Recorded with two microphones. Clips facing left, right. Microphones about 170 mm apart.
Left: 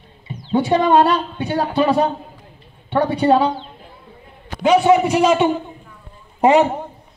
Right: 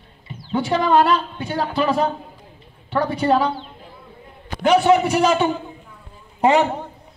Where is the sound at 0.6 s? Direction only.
20° left (ahead or behind).